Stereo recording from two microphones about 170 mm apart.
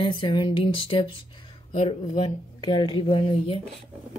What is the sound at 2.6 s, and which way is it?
Speech, 30° left (ahead or behind).